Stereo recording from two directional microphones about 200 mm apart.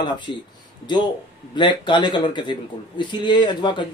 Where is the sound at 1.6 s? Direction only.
25° left (ahead or behind).